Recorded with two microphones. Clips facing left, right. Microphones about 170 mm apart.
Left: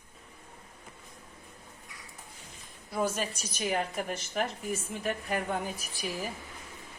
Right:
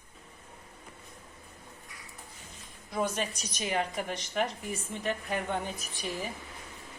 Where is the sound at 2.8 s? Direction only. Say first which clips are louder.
Even; 5° left (ahead or behind).